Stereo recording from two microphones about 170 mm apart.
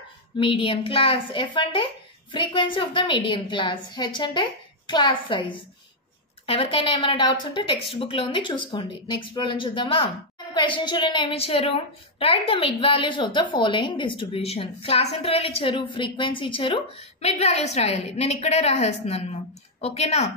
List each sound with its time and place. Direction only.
0.4 s a woman's voice: 30° left (ahead or behind)